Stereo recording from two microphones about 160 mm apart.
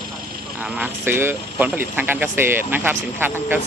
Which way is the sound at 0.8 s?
15° right (ahead or behind).